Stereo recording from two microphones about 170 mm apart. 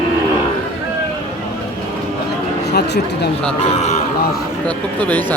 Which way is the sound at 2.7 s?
75° left (ahead or behind).